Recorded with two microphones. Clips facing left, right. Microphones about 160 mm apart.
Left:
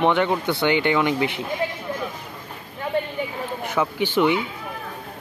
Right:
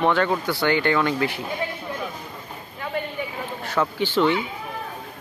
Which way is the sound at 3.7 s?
15° left (ahead or behind).